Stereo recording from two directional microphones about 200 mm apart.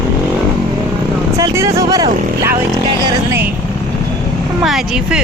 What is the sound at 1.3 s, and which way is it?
Speech, 15° right (ahead or behind).